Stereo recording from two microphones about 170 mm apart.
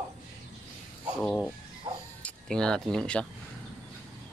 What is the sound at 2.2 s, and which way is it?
Speech, 5° left (ahead or behind).